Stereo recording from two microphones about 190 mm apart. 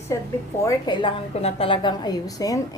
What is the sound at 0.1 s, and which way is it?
A woman's voice, 15° left (ahead or behind).